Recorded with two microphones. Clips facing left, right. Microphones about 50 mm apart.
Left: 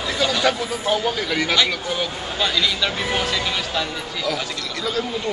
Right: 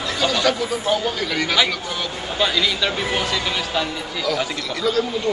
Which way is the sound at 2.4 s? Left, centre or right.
Centre.